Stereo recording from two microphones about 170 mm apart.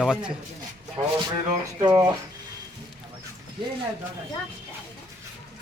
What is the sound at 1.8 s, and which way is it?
Speech, 25° right (ahead or behind).